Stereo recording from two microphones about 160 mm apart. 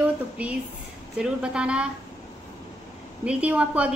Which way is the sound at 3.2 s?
10° right (ahead or behind).